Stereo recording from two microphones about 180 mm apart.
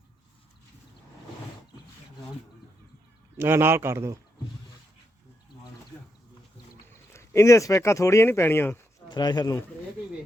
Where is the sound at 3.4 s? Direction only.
15° right (ahead or behind).